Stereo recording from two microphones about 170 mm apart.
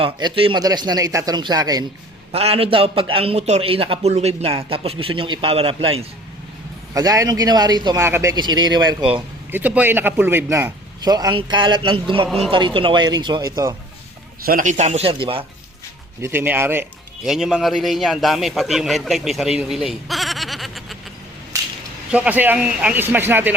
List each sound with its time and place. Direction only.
0.0 s a man's voice: 30° right (ahead or behind)
2.3 s a man's voice: 35° right (ahead or behind)
6.9 s a man's voice: 20° right (ahead or behind)
9.5 s a man's voice: 10° right (ahead or behind)
14.4 s a man's voice: 50° right (ahead or behind); by 15.4 s 30° right (ahead or behind)
16.2 s speech: 10° right (ahead or behind)
17.2 s a man's voice: 5° right (ahead or behind)
22.1 s speech: 10° right (ahead or behind)